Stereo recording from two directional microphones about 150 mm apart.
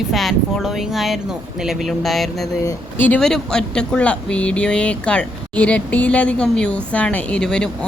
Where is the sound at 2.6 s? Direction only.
10° left (ahead or behind).